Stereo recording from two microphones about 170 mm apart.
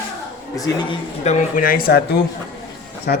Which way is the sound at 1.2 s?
55° left (ahead or behind).